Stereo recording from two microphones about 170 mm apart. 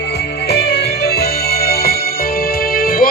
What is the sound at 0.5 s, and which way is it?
Music, 80° left.